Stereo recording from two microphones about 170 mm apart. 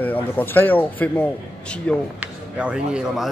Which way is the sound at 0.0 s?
10° left (ahead or behind).